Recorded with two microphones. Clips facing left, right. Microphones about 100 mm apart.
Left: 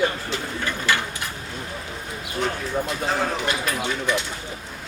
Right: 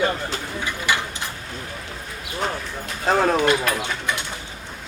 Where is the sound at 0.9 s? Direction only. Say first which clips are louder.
Even; 15° right (ahead or behind).